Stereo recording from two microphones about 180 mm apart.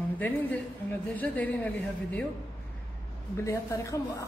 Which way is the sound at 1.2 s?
10° left (ahead or behind).